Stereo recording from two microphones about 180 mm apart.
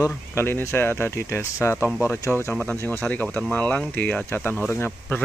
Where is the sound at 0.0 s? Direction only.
15° left (ahead or behind).